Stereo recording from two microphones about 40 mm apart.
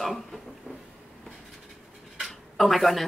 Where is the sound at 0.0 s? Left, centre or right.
Centre.